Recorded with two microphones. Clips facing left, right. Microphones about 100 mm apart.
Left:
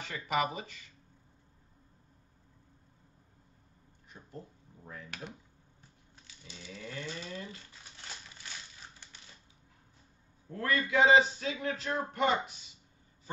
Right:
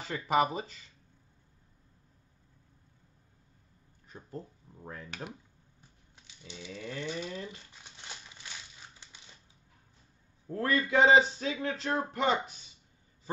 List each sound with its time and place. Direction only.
0.0 s a man's voice: 30° right (ahead or behind)
6.4 s a sound: 20° right (ahead or behind)
10.5 s a man's voice: 35° right (ahead or behind)